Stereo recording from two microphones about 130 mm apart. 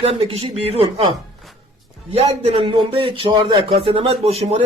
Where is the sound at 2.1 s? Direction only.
50° right (ahead or behind).